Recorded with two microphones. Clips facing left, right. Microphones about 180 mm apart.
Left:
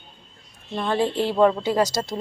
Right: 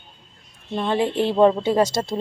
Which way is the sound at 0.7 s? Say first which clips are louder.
Right 1 dB; 20° right (ahead or behind).